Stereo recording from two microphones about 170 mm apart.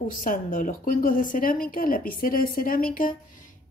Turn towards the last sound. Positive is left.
turn(degrees=50)  # may be behind; listen again after turning